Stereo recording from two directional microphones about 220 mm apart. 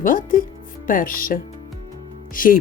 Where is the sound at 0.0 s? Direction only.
40° left (ahead or behind).